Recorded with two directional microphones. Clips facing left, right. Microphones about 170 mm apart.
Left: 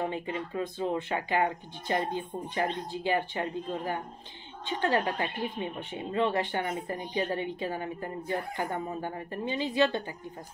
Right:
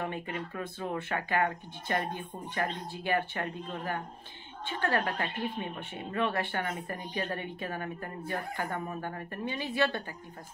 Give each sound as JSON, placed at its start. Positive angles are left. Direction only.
{"t": 0.0, "sound": "speech", "side_deg": 20}